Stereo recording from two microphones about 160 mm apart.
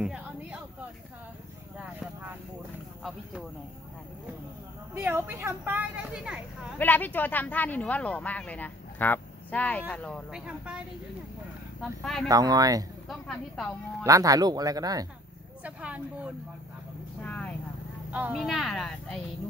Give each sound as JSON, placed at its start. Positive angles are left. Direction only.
{"t": 0.0, "sound": "a sound", "side_deg": -5}
{"t": 4.9, "sound": "speech", "side_deg": -15}
{"t": 6.8, "sound": "speech", "side_deg": 10}
{"t": 10.3, "sound": "speech", "side_deg": -5}
{"t": 11.8, "sound": "a woman's voice", "side_deg": 0}
{"t": 12.3, "sound": "speech", "side_deg": -25}
{"t": 13.1, "sound": "a woman's voice", "side_deg": 0}
{"t": 14.0, "sound": "speech", "side_deg": -20}
{"t": 15.6, "sound": "speech", "side_deg": -10}
{"t": 17.2, "sound": "speech", "side_deg": 10}
{"t": 18.1, "sound": "a woman's voice", "side_deg": -5}